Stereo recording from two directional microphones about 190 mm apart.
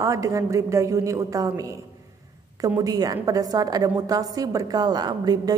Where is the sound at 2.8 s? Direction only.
20° right (ahead or behind).